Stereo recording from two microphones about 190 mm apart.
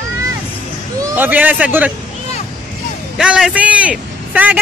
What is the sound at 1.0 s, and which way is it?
Speech, 10° right (ahead or behind).